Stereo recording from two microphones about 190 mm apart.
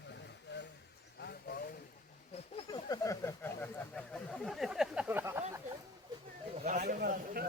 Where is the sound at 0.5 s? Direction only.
65° left (ahead or behind).